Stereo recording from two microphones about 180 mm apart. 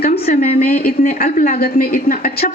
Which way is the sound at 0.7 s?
55° left (ahead or behind).